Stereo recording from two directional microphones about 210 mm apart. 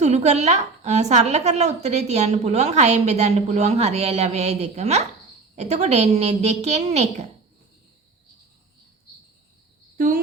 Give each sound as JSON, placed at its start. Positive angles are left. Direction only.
{"t": 0.0, "sound": "a woman's voice", "side_deg": -30}